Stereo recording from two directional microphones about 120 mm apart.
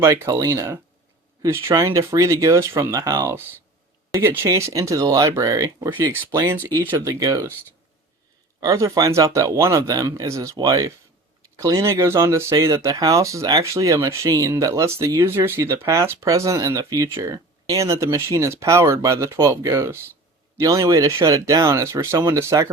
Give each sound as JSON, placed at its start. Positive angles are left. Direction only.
{"t": 0.0, "sound": "speech", "side_deg": -25}
{"t": 8.6, "sound": "speech", "side_deg": -30}